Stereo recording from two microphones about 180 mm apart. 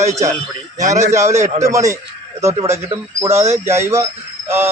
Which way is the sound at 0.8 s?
40° right (ahead or behind).